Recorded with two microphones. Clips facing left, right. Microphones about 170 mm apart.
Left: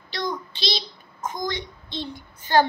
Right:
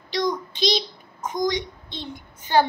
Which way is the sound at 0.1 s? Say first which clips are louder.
Right 5 dB; 15° right (ahead or behind).